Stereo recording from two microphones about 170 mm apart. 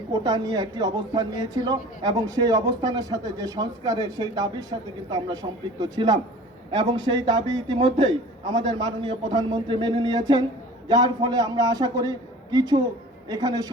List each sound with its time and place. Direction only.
0.1 s speech: 20° right (ahead or behind)